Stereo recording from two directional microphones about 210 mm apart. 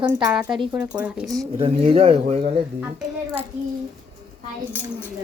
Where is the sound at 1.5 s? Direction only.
25° right (ahead or behind).